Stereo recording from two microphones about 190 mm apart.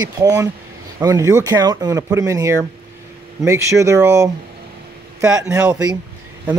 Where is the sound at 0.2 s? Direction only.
20° right (ahead or behind).